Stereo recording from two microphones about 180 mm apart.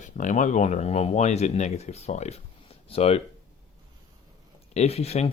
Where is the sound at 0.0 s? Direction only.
45° left (ahead or behind).